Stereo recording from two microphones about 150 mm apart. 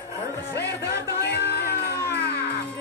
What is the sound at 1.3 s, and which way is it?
Music, 90° left.